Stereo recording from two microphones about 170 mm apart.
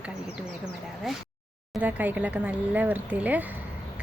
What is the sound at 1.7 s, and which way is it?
Speech, 10° right (ahead or behind).